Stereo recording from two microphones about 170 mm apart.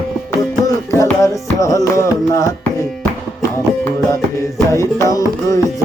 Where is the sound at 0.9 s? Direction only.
15° left (ahead or behind).